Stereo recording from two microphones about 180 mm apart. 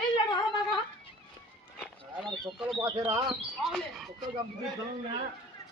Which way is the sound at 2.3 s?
Centre (ahead or behind).